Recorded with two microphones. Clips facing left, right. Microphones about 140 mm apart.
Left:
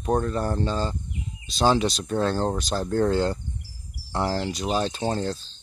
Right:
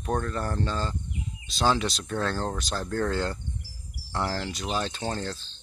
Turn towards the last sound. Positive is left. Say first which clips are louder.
# left 5 dB
turn(degrees=25)  # may be behind; listen again after turning